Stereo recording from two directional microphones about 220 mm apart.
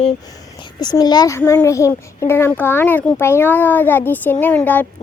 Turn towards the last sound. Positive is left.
turn(degrees=10)  # may be behind; listen again after turning